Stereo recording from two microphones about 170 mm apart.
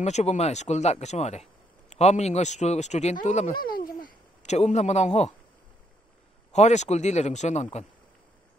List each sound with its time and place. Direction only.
0.0 s speech: 40° left (ahead or behind)
3.6 s speech: 60° left (ahead or behind)
4.4 s speech: 40° left (ahead or behind)
6.5 s speech: 40° left (ahead or behind)